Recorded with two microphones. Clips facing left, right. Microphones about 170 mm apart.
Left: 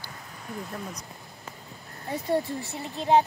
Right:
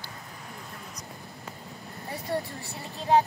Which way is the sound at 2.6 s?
20° left (ahead or behind).